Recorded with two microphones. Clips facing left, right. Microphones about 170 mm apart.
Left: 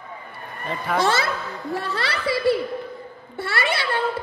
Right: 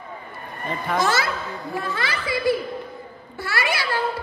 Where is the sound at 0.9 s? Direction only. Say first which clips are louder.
Left 1 dB; 30° left (ahead or behind).